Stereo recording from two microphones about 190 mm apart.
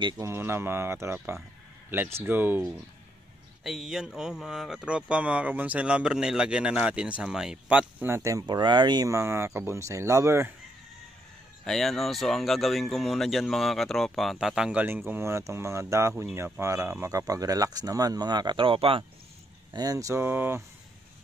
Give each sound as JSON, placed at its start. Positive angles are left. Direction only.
{"t": 0.0, "sound": "speech", "side_deg": -15}
{"t": 3.6, "sound": "speech", "side_deg": 0}
{"t": 11.6, "sound": "speech", "side_deg": 0}